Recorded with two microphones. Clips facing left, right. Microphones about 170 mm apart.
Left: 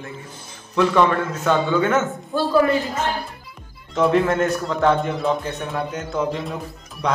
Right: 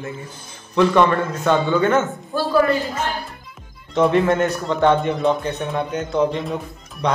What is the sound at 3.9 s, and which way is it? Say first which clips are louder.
A man's voice: right 1 dB; centre (ahead or behind).